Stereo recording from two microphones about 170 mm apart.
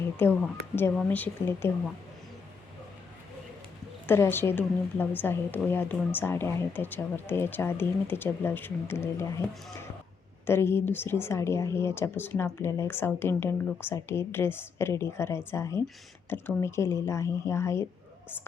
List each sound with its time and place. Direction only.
0.2 s speech: 15° left (ahead or behind)
4.0 s speech: 15° left (ahead or behind)
10.4 s speech: 15° left (ahead or behind)